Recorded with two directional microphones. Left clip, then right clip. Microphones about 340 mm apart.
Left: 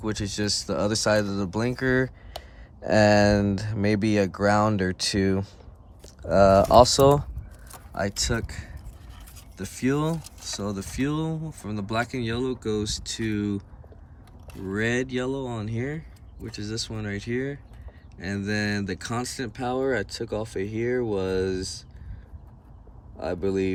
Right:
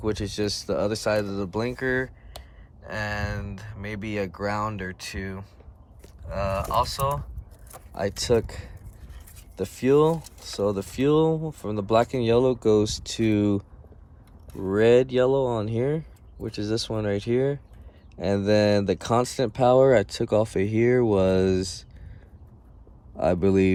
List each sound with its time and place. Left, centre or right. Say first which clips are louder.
0.0 s speech: right 2 dB; centre
7.9 s speech: right 4 dB; centre
14.7 s speech: right 8 dB; centre
23.2 s speech: right 5 dB; centre